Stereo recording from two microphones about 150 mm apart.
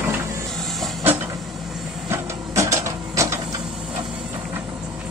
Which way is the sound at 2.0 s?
20° right (ahead or behind).